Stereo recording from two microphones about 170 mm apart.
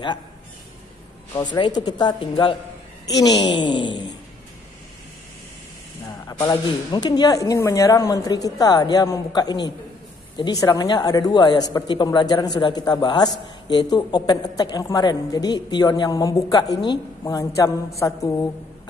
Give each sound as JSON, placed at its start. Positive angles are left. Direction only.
{"t": 1.3, "sound": "a woman's voice", "side_deg": 25}
{"t": 3.5, "sound": "a woman's voice", "side_deg": 25}
{"t": 6.0, "sound": "a woman's voice", "side_deg": 25}